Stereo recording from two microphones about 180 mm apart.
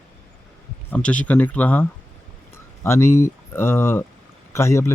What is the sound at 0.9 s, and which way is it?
Speech, 10° left (ahead or behind).